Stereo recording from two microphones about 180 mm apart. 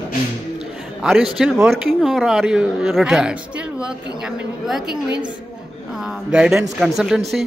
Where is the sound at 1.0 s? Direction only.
5° right (ahead or behind).